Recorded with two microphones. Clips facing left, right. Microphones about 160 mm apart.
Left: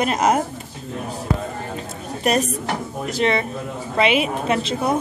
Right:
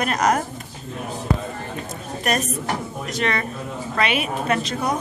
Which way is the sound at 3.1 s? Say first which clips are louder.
Left 4 dB; 30° left (ahead or behind).